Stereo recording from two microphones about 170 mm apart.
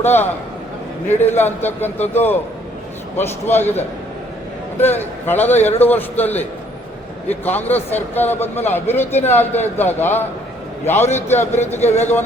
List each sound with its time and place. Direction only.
0.0 s speech: 15° left (ahead or behind)
11.8 s speech: 40° left (ahead or behind)